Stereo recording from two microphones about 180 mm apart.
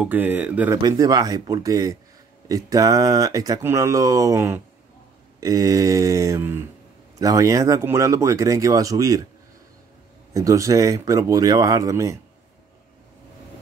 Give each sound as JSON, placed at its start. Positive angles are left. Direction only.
{"t": 0.0, "sound": "speech", "side_deg": -10}
{"t": 0.8, "sound": "speech", "side_deg": -20}
{"t": 10.3, "sound": "speech", "side_deg": -15}